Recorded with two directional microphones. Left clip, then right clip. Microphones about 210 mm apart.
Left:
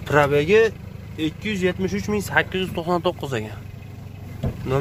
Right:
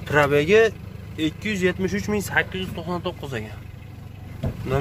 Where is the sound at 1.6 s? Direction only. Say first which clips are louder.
Even; 5° right (ahead or behind).